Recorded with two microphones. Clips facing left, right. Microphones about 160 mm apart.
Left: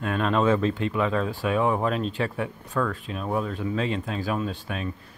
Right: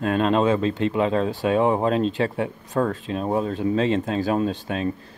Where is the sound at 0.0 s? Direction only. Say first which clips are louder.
Right 4 dB; 25° right (ahead or behind).